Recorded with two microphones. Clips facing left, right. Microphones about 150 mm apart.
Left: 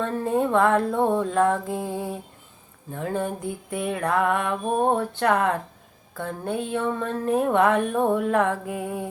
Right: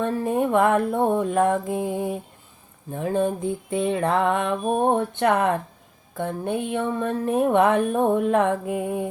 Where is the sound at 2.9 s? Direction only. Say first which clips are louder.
Right 4 dB; 20° right (ahead or behind).